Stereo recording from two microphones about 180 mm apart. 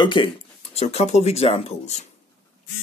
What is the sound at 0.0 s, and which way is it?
Speech, 25° left (ahead or behind).